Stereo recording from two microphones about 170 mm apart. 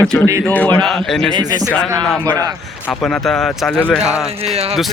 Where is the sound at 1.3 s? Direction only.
25° right (ahead or behind).